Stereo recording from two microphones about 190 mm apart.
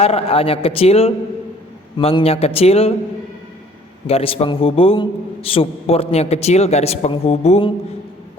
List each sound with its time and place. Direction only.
0.0 s a man's voice: 30° left (ahead or behind)
4.0 s a man's voice: 30° left (ahead or behind)